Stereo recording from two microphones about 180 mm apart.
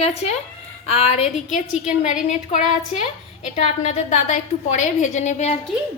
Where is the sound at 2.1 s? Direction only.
40° left (ahead or behind).